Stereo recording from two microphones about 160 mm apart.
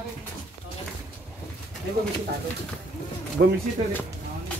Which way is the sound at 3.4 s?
90° right.